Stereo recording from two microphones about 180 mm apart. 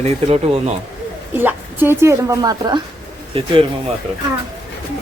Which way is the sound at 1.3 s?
10° right (ahead or behind).